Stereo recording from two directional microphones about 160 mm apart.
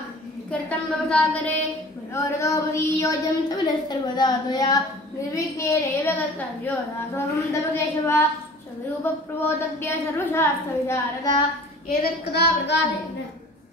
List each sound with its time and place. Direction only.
0.5 s a woman's voice: 5° left (ahead or behind)
12.0 s a woman's voice: 90° left